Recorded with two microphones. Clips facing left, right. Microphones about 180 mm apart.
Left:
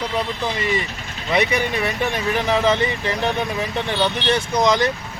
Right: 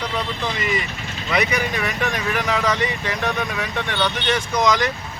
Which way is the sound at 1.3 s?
30° left (ahead or behind).